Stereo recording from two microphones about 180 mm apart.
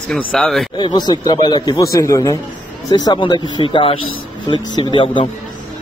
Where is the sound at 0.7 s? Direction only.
25° left (ahead or behind).